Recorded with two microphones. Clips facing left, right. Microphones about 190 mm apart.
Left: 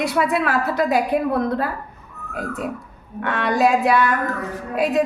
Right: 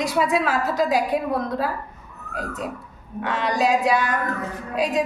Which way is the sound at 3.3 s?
55° left (ahead or behind).